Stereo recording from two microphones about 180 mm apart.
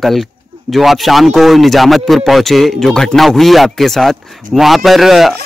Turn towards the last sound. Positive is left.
turn(degrees=0)  # may be behind; listen again after turning